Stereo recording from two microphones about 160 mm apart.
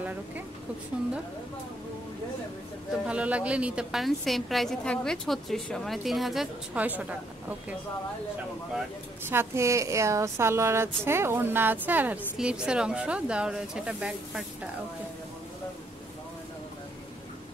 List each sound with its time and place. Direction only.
3.1 s a woman's voice: 10° right (ahead or behind)
9.3 s a woman's voice: 15° right (ahead or behind)